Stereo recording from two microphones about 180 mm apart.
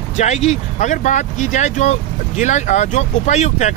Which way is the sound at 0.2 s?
40° left (ahead or behind).